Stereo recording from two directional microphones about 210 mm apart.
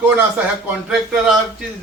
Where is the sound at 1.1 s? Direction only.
Centre (ahead or behind).